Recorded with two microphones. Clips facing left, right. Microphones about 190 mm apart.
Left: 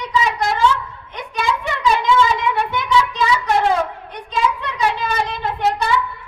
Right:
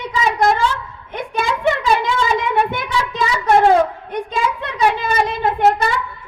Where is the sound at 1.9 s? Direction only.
55° right (ahead or behind).